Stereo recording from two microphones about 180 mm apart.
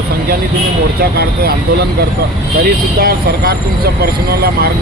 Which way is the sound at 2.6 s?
55° right (ahead or behind).